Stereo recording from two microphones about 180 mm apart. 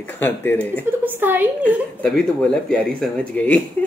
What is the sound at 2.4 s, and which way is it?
Speech, 5° left (ahead or behind).